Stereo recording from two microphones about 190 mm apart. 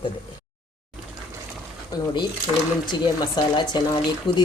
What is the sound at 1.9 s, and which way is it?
Speech, 20° left (ahead or behind).